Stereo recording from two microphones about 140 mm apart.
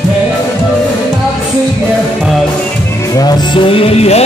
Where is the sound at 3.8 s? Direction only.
45° left (ahead or behind).